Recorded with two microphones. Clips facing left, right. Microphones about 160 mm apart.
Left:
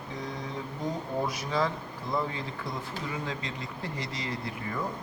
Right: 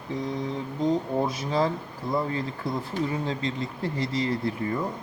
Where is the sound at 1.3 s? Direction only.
30° right (ahead or behind).